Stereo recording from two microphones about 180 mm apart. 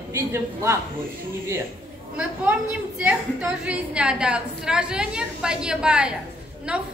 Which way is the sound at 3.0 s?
5° right (ahead or behind).